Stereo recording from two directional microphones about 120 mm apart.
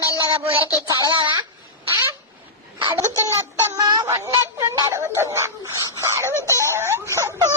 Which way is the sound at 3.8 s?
30° right (ahead or behind).